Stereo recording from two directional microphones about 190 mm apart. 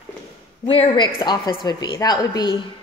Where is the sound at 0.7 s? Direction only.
30° left (ahead or behind).